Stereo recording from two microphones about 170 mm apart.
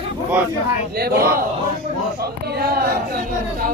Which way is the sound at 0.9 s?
65° right (ahead or behind).